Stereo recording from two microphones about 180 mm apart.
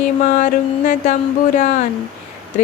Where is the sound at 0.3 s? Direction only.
45° left (ahead or behind).